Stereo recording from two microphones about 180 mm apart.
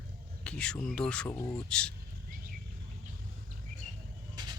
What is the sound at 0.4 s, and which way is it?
Speech, 5° left (ahead or behind).